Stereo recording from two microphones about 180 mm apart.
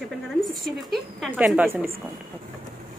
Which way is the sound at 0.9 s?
Centre (ahead or behind).